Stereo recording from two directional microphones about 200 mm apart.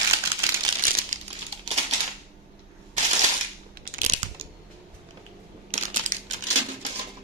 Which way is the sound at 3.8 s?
45° right (ahead or behind).